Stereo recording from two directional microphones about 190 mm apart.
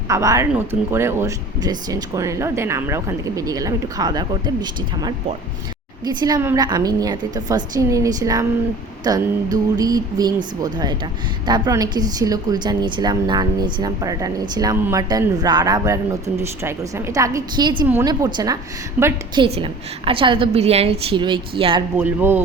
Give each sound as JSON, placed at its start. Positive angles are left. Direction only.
{"t": 0.1, "sound": "speech", "side_deg": -15}
{"t": 6.1, "sound": "a woman's voice", "side_deg": -20}
{"t": 19.4, "sound": "a woman's voice", "side_deg": -30}
{"t": 21.9, "sound": "speech", "side_deg": -10}